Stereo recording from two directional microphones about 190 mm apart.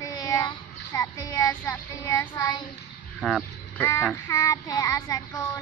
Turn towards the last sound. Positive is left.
turn(degrees=20)  # may be behind; listen again after turning